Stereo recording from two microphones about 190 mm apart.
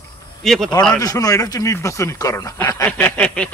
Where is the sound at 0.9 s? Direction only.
20° left (ahead or behind).